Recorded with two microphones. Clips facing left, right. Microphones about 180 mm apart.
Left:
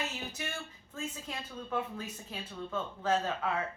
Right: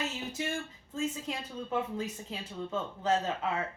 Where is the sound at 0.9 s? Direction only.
20° right (ahead or behind).